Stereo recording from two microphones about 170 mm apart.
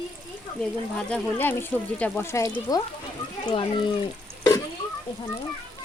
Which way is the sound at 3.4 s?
30° left (ahead or behind).